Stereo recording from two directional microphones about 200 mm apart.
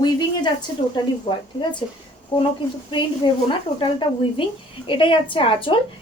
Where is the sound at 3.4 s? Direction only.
25° left (ahead or behind).